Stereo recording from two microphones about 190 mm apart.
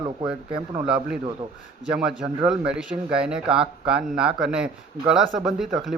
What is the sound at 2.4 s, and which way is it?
Speech, 5° right (ahead or behind).